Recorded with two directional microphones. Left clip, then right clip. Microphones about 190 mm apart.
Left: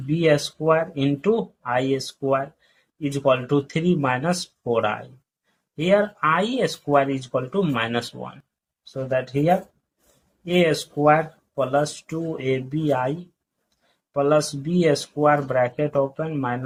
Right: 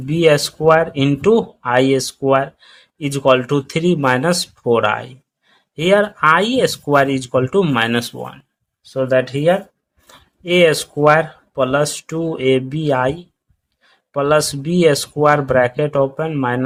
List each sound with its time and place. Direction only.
0.2 s speech: 45° right (ahead or behind)